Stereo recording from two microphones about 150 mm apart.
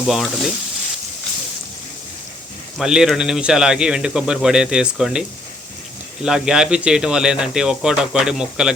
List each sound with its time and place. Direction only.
0.1 s speech: centre (ahead or behind)
2.7 s speech: 5° right (ahead or behind)
6.2 s speech: 5° right (ahead or behind)